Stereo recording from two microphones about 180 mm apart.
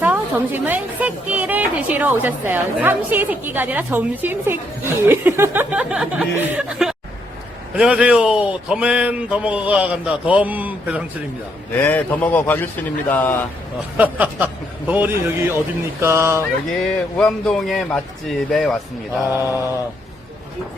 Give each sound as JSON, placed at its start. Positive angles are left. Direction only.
{"t": 0.0, "sound": "a woman's voice", "side_deg": -10}
{"t": 11.7, "sound": "speech", "side_deg": 10}
{"t": 13.9, "sound": "a woman's voice", "side_deg": -10}
{"t": 17.2, "sound": "a man's voice", "side_deg": 5}
{"t": 19.4, "sound": "mantra", "side_deg": 20}